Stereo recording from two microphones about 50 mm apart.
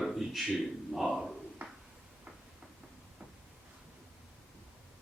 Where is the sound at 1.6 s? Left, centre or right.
Right.